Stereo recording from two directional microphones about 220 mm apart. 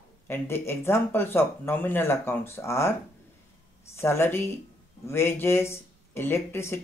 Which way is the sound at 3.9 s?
10° left (ahead or behind).